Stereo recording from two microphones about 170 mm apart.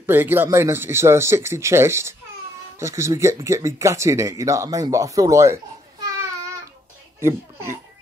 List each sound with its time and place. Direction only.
0.0 s speech: 10° right (ahead or behind)
7.2 s speech: 15° right (ahead or behind)